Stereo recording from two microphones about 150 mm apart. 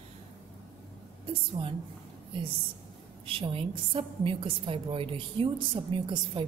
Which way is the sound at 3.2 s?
40° right (ahead or behind).